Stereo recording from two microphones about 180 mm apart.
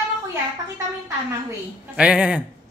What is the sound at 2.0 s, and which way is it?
Speech, 5° right (ahead or behind).